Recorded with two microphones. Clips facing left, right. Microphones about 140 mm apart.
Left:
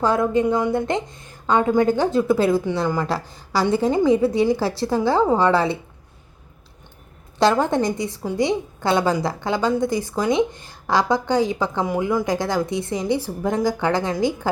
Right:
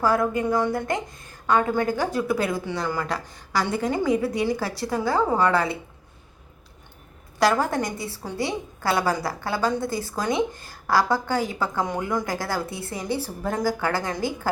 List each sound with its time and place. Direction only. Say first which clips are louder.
0.0 s speech: left 3 dB; 20° left (ahead or behind)
7.3 s speech: left 4 dB; 25° left (ahead or behind)
11.9 s speech: left 5 dB; 10° left (ahead or behind)